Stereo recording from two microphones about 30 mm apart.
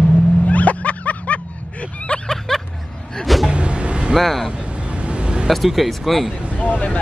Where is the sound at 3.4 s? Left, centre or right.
Right.